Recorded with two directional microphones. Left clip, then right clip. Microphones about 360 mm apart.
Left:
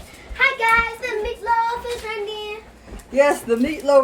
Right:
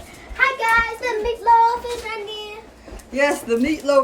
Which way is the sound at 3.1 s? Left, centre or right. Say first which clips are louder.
Left 2 dB; centre.